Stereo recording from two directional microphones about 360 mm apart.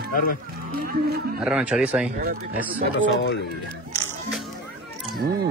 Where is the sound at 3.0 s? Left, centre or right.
Left.